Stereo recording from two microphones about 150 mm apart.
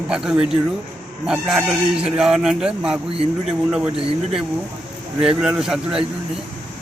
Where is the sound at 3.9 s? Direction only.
40° right (ahead or behind).